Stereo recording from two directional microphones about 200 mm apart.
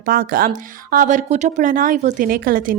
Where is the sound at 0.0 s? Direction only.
45° right (ahead or behind).